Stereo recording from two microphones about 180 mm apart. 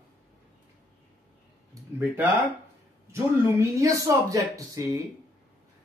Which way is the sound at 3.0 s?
15° right (ahead or behind).